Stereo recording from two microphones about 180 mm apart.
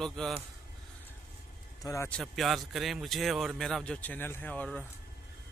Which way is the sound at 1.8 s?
15° left (ahead or behind).